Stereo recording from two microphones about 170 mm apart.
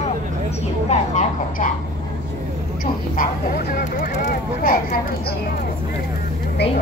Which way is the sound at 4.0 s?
55° left (ahead or behind).